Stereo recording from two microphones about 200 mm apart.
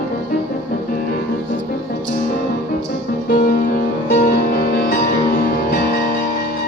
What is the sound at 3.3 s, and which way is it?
Music, 45° left (ahead or behind).